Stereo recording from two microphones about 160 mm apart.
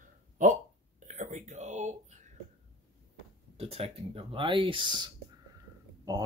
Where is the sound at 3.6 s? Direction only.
40° right (ahead or behind).